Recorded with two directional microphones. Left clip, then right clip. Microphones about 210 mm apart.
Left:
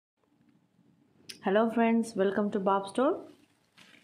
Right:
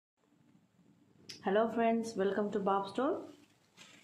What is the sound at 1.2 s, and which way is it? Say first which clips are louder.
Speech: left 4 dB; 30° left (ahead or behind).